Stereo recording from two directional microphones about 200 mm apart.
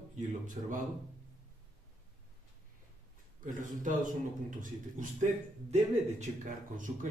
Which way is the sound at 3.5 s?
40° right (ahead or behind).